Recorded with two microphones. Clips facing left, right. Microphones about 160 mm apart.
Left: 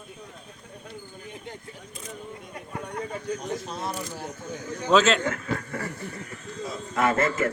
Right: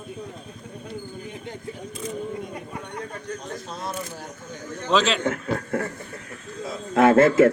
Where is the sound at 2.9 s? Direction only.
5° left (ahead or behind).